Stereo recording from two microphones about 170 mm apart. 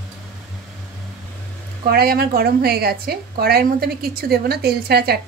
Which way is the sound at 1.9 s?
65° right (ahead or behind).